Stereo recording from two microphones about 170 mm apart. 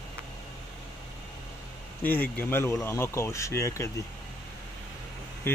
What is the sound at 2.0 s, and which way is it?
Speech, 10° left (ahead or behind).